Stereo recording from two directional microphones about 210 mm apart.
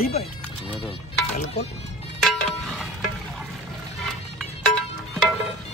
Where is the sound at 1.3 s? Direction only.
30° left (ahead or behind).